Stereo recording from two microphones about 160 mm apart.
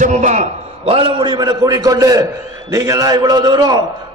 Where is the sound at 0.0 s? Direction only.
50° right (ahead or behind).